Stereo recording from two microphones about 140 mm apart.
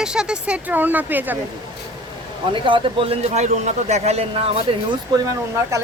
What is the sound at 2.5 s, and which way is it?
A man's voice, 40° right (ahead or behind).